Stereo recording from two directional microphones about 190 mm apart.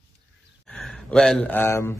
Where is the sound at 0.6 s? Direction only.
5° left (ahead or behind).